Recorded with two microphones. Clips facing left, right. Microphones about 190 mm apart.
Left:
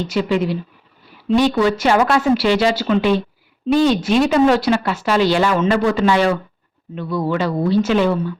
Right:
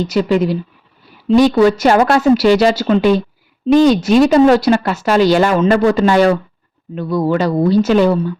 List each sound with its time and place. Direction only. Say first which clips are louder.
0.1 s a woman's voice: right 3 dB; 40° right (ahead or behind)